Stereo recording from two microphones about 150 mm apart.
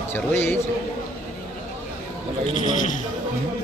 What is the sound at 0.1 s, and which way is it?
Speech, 15° left (ahead or behind).